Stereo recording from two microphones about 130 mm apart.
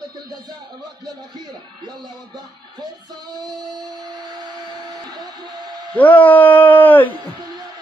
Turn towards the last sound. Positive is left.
turn(degrees=15)  # may be behind; listen again after turning